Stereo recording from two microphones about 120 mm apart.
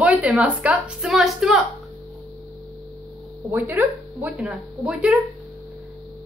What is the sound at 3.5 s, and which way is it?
A woman's voice, 15° right (ahead or behind).